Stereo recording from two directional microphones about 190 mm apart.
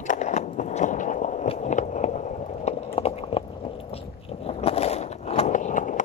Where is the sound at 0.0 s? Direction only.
40° left (ahead or behind).